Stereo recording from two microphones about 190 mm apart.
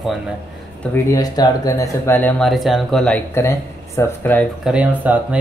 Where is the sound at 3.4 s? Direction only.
15° left (ahead or behind).